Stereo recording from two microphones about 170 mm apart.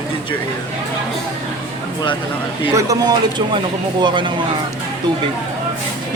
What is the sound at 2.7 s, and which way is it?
A woman's voice, 20° right (ahead or behind).